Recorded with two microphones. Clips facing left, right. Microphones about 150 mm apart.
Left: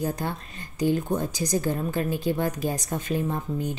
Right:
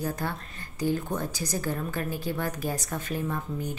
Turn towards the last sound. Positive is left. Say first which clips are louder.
# left 3 dB
turn(degrees=25)  # may be behind; listen again after turning